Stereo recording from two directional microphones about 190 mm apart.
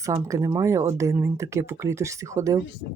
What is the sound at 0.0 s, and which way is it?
Speech, 15° right (ahead or behind).